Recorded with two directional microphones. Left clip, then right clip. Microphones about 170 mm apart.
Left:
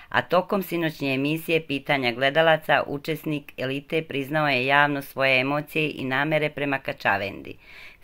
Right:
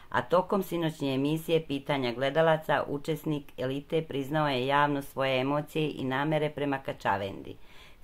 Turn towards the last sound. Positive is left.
turn(degrees=10)  # may be behind; listen again after turning